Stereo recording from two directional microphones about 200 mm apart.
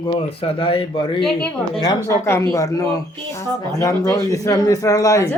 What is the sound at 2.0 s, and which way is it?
A woman's voice, 15° left (ahead or behind).